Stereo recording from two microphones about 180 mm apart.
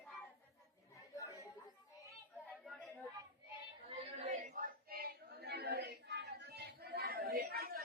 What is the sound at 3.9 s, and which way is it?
Female singing, 40° right (ahead or behind).